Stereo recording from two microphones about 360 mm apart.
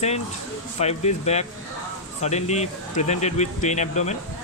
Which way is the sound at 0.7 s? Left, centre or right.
Centre.